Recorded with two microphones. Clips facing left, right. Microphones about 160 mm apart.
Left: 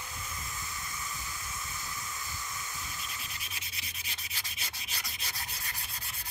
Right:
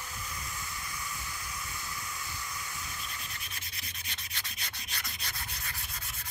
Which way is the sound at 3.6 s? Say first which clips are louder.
Even; 5° left (ahead or behind).